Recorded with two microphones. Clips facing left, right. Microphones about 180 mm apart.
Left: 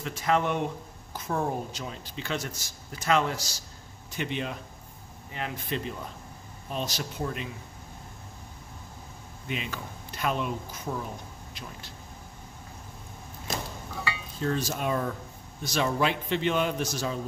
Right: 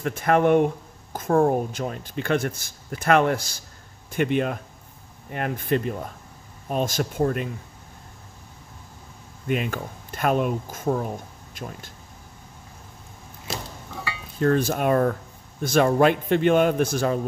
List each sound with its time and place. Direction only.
0.0 s speech: 55° right (ahead or behind)
9.5 s speech: 50° right (ahead or behind)
14.4 s speech: 55° right (ahead or behind)